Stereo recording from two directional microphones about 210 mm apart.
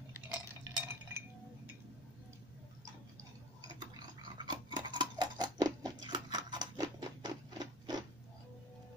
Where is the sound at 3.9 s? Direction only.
20° right (ahead or behind).